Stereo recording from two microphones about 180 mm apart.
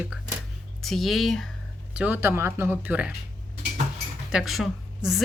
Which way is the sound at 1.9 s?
10° right (ahead or behind).